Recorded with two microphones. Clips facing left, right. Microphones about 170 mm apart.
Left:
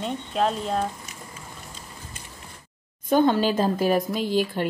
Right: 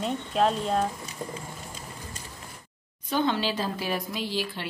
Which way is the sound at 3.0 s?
45° left (ahead or behind).